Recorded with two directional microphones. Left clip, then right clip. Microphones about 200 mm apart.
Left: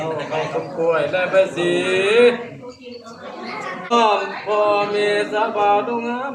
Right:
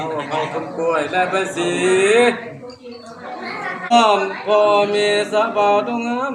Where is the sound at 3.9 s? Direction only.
55° right (ahead or behind).